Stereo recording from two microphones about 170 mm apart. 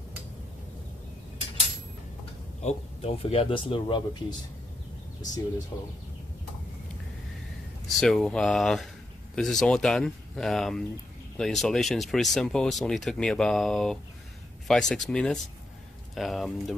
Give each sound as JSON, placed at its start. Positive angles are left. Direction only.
{"t": 2.6, "sound": "speech", "side_deg": 35}
{"t": 5.7, "sound": "speech", "side_deg": 20}
{"t": 7.9, "sound": "speech", "side_deg": 0}